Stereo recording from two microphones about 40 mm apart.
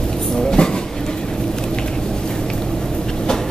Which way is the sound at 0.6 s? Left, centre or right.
Left.